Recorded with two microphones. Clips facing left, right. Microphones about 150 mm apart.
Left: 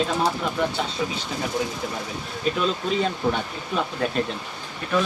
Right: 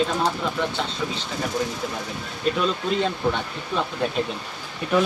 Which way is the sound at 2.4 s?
Centre (ahead or behind).